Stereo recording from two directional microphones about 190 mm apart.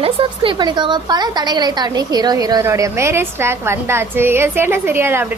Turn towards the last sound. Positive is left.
turn(degrees=-10)  # may be behind; listen again after turning